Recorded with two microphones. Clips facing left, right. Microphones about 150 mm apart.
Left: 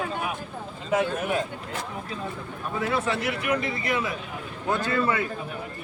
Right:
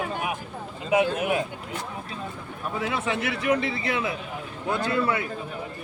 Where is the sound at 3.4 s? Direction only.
25° right (ahead or behind).